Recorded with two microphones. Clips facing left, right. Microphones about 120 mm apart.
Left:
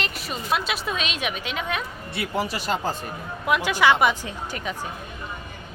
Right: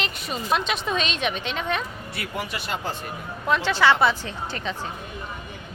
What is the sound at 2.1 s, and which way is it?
Speech, 30° left (ahead or behind).